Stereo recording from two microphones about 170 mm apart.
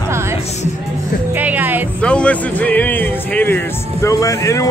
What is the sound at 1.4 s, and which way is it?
Music, 10° right (ahead or behind).